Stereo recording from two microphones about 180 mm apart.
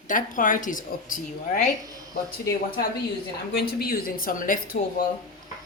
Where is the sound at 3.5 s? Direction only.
60° left (ahead or behind).